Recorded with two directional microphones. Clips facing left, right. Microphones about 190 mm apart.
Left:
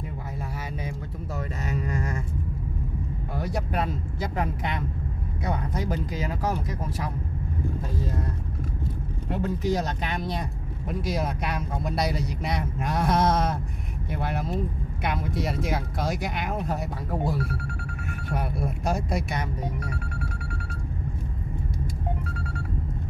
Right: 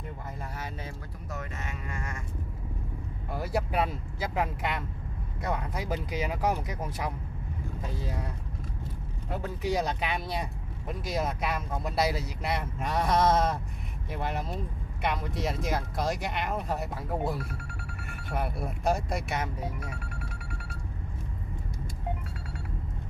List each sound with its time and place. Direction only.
1.3 s speech: 35° left (ahead or behind)
3.3 s speech: 5° right (ahead or behind)
9.6 s speech: 10° right (ahead or behind)